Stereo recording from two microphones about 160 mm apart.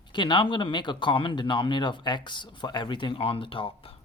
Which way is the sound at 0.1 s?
30° left (ahead or behind).